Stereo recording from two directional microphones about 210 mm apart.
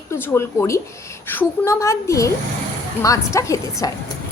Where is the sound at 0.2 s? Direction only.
10° left (ahead or behind).